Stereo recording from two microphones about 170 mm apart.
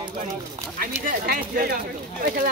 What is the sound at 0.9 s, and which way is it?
Speech, 55° right (ahead or behind).